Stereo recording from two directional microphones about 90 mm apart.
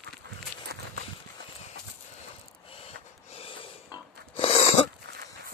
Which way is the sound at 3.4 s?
85° left.